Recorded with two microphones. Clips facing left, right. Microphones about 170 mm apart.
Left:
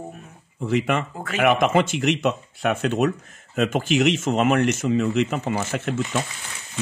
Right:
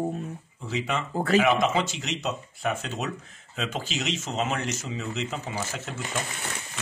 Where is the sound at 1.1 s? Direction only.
35° right (ahead or behind).